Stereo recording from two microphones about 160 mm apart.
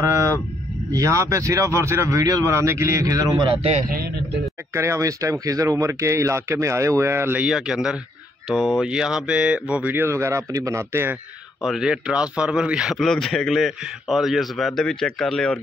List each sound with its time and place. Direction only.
0.0 s a sound: 20° right (ahead or behind)
0.9 s speech: 20° right (ahead or behind); by 3.8 s 35° right (ahead or behind)
3.9 s a man's voice: 75° right (ahead or behind)
4.7 s speech: 20° right (ahead or behind)
11.6 s a man's voice: 5° right (ahead or behind)